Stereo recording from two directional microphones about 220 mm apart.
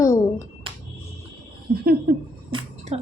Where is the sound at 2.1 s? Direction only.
45° right (ahead or behind).